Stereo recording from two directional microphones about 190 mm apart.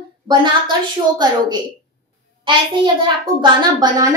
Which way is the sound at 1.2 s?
20° right (ahead or behind).